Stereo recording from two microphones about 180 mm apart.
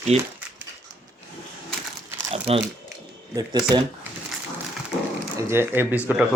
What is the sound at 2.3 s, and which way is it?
Crumpling, 30° right (ahead or behind).